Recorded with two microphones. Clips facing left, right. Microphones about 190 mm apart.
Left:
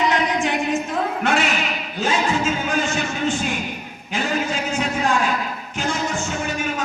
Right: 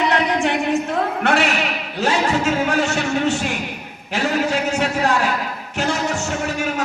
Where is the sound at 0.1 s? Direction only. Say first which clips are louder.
Right 2 dB; 65° right (ahead or behind).